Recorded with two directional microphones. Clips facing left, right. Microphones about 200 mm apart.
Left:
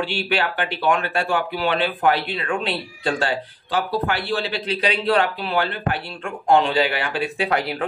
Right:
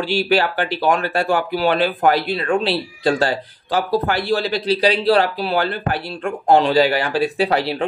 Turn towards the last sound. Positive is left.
turn(degrees=-30)  # may be behind; listen again after turning